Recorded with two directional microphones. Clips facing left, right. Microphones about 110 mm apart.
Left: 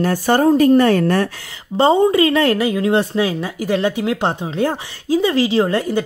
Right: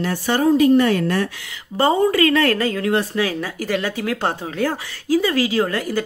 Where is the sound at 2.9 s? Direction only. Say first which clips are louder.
Left 3 dB; 25° left (ahead or behind).